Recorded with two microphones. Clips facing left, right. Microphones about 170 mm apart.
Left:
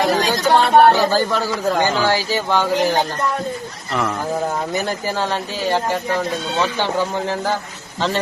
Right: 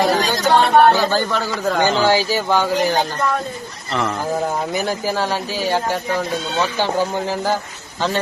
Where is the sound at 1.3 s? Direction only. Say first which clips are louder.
Left 1 dB; 5° left (ahead or behind).